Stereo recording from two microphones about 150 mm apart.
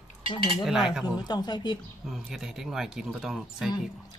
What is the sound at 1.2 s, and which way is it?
Speech, 30° left (ahead or behind).